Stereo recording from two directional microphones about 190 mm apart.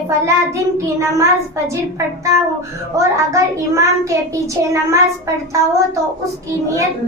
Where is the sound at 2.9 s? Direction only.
15° right (ahead or behind).